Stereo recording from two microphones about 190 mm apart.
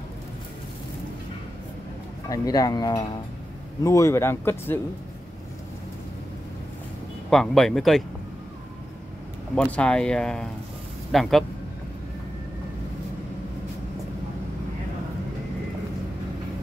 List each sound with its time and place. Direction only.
2.2 s speech: 20° left (ahead or behind)
7.2 s speech: centre (ahead or behind)
9.6 s speech: 5° left (ahead or behind)